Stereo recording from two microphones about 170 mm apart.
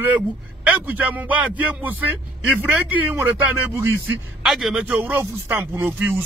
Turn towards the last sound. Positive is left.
turn(degrees=-10)  # may be behind; listen again after turning